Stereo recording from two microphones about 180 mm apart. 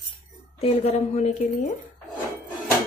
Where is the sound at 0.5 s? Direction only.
35° left (ahead or behind).